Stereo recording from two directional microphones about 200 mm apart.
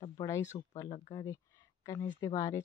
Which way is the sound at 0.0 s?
20° left (ahead or behind).